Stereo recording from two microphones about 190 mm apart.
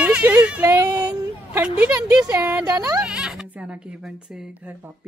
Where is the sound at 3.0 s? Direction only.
5° right (ahead or behind).